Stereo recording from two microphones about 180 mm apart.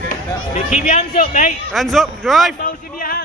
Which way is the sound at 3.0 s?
55° left (ahead or behind).